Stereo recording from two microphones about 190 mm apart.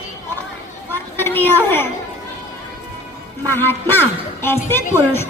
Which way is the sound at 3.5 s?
10° left (ahead or behind).